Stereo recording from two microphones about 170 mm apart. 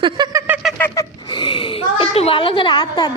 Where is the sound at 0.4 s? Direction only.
10° right (ahead or behind).